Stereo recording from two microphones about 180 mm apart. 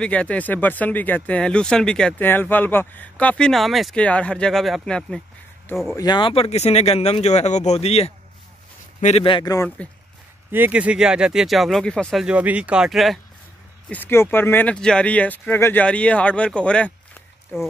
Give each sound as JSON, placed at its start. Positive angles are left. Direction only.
{"t": 0.0, "sound": "speech", "side_deg": 5}
{"t": 5.9, "sound": "speech", "side_deg": 20}
{"t": 10.5, "sound": "speech", "side_deg": -10}
{"t": 13.8, "sound": "speech", "side_deg": 10}